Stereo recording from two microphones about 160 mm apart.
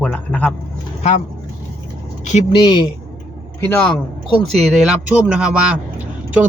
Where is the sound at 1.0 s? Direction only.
45° left (ahead or behind).